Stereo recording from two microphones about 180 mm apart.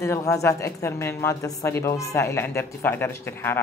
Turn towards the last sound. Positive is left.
turn(degrees=10)  # may be behind; listen again after turning